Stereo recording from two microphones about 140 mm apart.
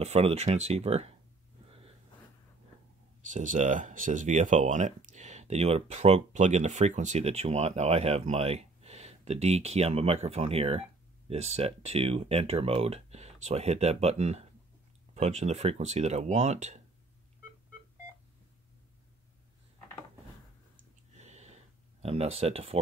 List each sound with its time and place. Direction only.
0.0 s speech: 50° right (ahead or behind)
3.3 s speech: 60° right (ahead or behind)
21.2 s a sound: 55° right (ahead or behind)
22.0 s speech: 45° right (ahead or behind)